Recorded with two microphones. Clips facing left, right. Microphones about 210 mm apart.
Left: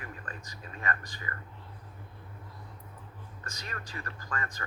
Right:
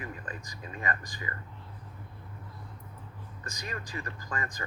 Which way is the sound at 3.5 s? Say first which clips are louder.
Right 4 dB; 15° right (ahead or behind).